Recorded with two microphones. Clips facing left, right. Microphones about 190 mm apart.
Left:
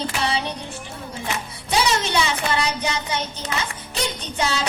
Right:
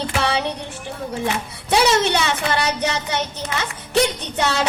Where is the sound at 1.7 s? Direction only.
70° right (ahead or behind).